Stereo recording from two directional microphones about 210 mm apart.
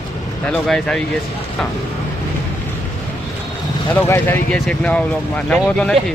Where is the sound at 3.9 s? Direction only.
10° left (ahead or behind).